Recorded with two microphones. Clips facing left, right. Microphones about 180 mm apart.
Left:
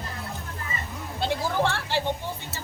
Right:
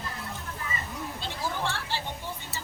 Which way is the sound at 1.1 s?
70° left (ahead or behind).